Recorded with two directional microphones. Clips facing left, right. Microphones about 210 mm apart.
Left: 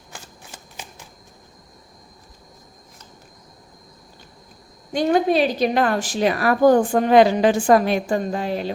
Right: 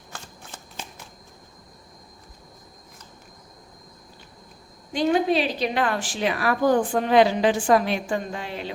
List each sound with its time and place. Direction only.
0.1 s shuffling cards: 10° left (ahead or behind)
4.9 s a woman's voice: 45° left (ahead or behind)